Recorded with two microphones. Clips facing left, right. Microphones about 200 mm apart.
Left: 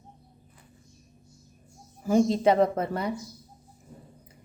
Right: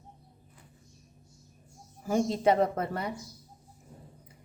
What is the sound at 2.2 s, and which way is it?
Speech, 90° left.